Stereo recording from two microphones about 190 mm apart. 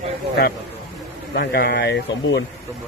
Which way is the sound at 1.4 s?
55° left (ahead or behind).